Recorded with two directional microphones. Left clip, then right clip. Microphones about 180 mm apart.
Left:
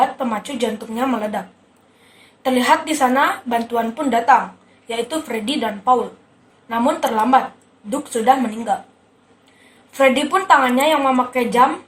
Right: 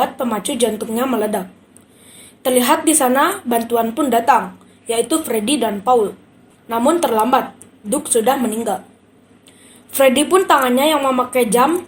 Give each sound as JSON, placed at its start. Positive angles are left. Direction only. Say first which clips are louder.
{"t": 0.0, "sound": "speech", "louder": "even", "side_deg": -40}
{"t": 2.4, "sound": "a woman's voice", "louder": "right 1 dB", "side_deg": -40}
{"t": 10.0, "sound": "a woman's voice", "louder": "right 3 dB", "side_deg": -45}